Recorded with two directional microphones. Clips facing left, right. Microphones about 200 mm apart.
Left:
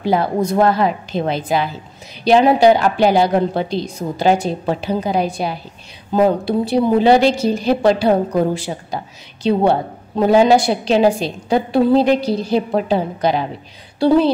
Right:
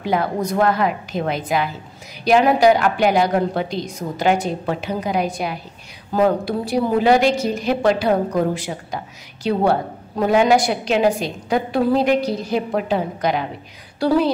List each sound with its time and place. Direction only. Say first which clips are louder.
0.0 s a woman's voice: left 4 dB; 30° left (ahead or behind)